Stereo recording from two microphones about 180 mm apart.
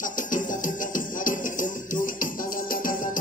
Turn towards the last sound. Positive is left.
turn(degrees=50)  # may be behind; listen again after turning